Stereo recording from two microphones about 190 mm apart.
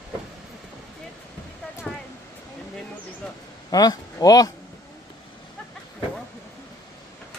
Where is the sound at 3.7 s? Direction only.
20° left (ahead or behind).